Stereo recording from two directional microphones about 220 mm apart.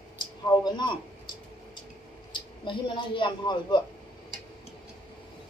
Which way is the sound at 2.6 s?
20° left (ahead or behind).